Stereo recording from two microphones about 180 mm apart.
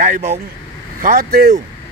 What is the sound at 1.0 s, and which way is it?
Speech, 55° right (ahead or behind).